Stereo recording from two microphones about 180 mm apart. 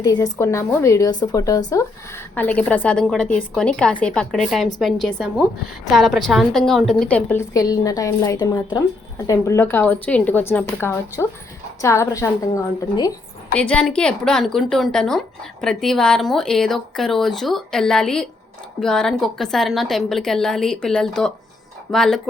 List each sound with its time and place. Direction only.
0.0 s a woman's voice: 20° left (ahead or behind)
7.5 s a woman's voice: 20° left (ahead or behind)
13.5 s speech: 5° left (ahead or behind)